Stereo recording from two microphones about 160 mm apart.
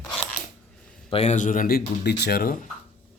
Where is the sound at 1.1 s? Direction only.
40° left (ahead or behind); by 2.6 s 65° left (ahead or behind).